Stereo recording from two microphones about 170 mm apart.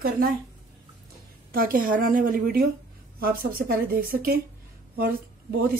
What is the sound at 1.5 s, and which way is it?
A woman's voice, 55° right (ahead or behind).